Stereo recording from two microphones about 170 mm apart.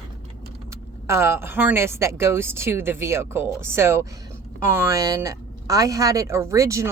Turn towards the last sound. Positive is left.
turn(degrees=-15)  # may be behind; listen again after turning